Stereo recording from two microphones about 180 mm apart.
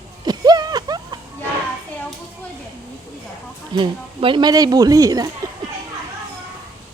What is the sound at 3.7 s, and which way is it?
Speech, 25° right (ahead or behind).